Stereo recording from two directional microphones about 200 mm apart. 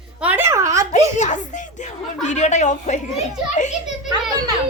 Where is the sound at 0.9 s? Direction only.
35° left (ahead or behind).